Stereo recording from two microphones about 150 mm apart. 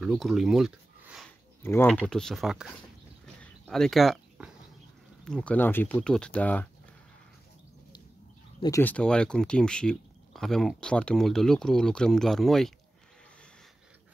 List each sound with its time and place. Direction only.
0.0 s speech: centre (ahead or behind)
1.6 s speech: 15° left (ahead or behind)
2.0 s speech: 5° left (ahead or behind)
8.8 s speech: 5° left (ahead or behind)